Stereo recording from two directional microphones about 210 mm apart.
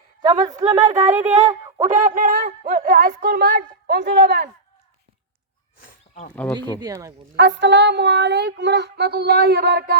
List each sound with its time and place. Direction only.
0.2 s a woman's voice: 20° right (ahead or behind)
1.9 s speech: 40° right (ahead or behind)
5.8 s a sound: 40° left (ahead or behind)
6.3 s speech: 5° left (ahead or behind)
6.7 s speech: 15° right (ahead or behind)
7.3 s speech: 55° right (ahead or behind)